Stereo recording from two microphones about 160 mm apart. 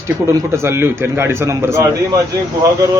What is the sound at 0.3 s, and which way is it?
A man's voice, 15° right (ahead or behind).